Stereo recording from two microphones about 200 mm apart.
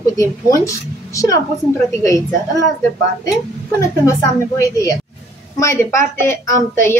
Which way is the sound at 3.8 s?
15° left (ahead or behind).